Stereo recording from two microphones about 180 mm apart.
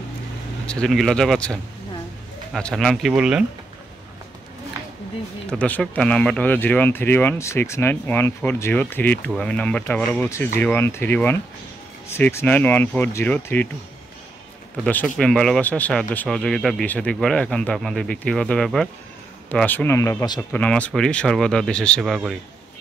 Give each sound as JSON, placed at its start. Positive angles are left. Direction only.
{"t": 0.7, "sound": "speech", "side_deg": 5}
{"t": 5.5, "sound": "speech", "side_deg": 5}
{"t": 14.9, "sound": "speech", "side_deg": 5}